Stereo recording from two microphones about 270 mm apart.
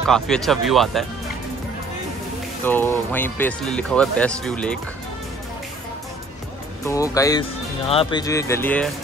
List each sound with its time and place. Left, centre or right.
0.0 s speech: centre
2.6 s speech: centre
6.8 s speech: centre